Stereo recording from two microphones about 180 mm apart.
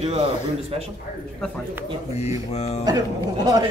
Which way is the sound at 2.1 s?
35° left (ahead or behind).